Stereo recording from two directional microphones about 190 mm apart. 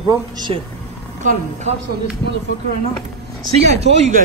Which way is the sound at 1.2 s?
40° right (ahead or behind).